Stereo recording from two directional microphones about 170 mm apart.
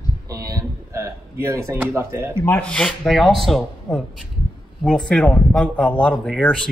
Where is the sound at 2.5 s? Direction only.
10° left (ahead or behind).